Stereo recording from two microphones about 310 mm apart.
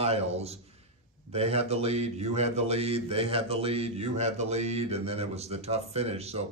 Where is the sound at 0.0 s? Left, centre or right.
Centre.